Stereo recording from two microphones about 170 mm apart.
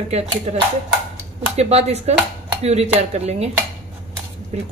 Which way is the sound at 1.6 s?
40° right (ahead or behind).